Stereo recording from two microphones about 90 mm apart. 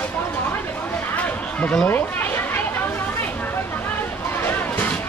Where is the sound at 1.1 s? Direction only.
15° left (ahead or behind).